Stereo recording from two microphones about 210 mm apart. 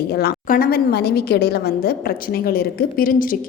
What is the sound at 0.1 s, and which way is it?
A woman's voice, 50° left (ahead or behind).